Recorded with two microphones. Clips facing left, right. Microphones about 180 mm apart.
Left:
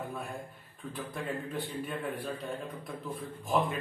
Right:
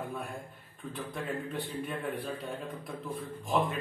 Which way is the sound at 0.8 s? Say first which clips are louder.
Even; centre (ahead or behind).